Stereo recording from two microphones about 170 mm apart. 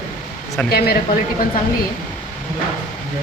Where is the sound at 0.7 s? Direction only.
65° left (ahead or behind).